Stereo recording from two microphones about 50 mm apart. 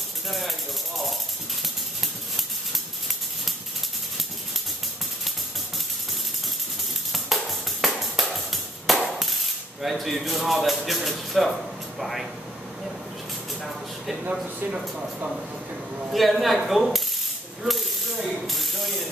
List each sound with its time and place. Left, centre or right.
0.3 s music: centre
1.6 s a sound: centre
7.1 s music: centre
9.2 s a sound: centre
10.9 s speech: centre
14.4 s speech: right
16.1 s speech: centre
17.6 s ratchet: centre